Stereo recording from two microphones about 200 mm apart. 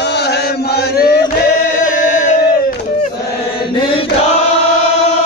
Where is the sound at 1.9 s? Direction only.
40° left (ahead or behind).